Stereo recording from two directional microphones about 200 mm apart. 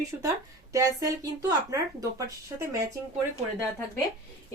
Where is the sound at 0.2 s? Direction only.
15° right (ahead or behind).